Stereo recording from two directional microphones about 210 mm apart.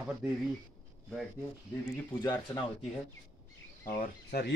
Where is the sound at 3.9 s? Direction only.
45° left (ahead or behind).